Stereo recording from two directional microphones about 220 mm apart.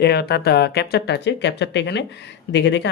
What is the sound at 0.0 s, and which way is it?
Speech, 45° left (ahead or behind).